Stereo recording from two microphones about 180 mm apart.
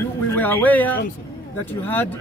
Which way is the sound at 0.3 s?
10° left (ahead or behind).